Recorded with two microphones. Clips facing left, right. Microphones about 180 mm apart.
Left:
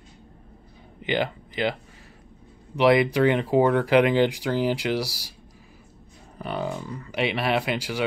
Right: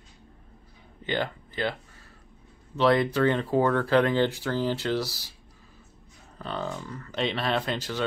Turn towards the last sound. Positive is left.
turn(degrees=10)  # may be behind; listen again after turning